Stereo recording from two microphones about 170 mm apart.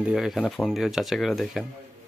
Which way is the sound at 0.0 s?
Centre (ahead or behind).